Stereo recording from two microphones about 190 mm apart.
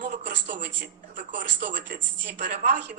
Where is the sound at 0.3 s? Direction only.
65° right (ahead or behind).